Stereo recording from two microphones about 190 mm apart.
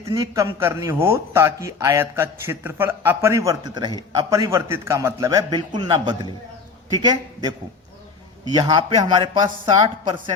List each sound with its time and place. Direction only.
0.0 s a man's voice: 15° right (ahead or behind)
8.5 s a man's voice: 25° right (ahead or behind)